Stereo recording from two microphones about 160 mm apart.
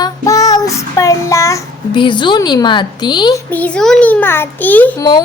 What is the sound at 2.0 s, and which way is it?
A woman's voice, 30° left (ahead or behind).